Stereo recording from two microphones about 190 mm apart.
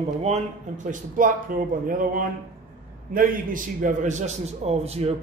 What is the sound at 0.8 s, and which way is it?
A man's voice, 45° right (ahead or behind).